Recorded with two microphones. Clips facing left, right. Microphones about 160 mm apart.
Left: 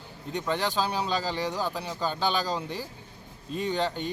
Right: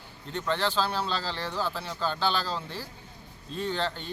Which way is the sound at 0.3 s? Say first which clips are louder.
Even; 15° left (ahead or behind).